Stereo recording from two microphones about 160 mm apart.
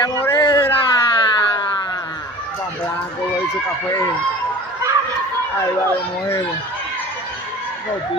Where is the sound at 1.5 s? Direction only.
25° left (ahead or behind).